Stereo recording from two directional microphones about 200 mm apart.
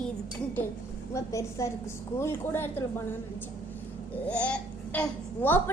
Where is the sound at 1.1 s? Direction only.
15° left (ahead or behind).